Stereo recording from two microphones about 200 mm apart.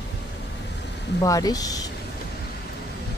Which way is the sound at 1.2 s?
20° left (ahead or behind).